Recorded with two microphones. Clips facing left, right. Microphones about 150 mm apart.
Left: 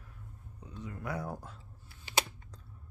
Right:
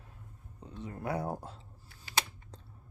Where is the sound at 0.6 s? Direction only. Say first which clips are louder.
Right 2 dB; 30° right (ahead or behind).